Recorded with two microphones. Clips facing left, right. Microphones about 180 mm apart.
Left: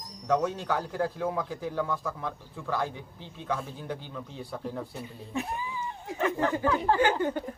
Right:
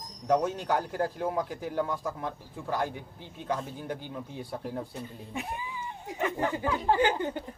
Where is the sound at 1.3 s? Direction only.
15° right (ahead or behind).